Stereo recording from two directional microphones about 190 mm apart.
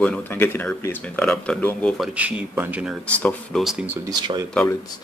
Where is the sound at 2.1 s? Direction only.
5° right (ahead or behind).